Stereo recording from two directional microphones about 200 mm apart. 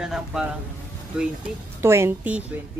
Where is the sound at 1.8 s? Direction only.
10° right (ahead or behind).